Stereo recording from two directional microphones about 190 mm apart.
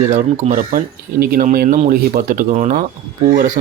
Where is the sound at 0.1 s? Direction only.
40° right (ahead or behind).